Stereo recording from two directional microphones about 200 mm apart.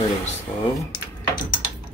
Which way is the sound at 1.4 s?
45° left (ahead or behind).